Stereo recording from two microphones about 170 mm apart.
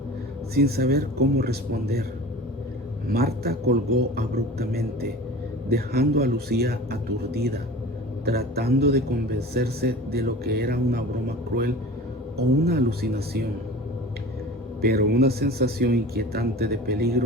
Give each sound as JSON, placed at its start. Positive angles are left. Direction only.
{"t": 0.5, "sound": "speech", "side_deg": -65}
{"t": 3.1, "sound": "a man's voice", "side_deg": -65}
{"t": 8.2, "sound": "a man's voice", "side_deg": -65}
{"t": 14.8, "sound": "speech", "side_deg": -65}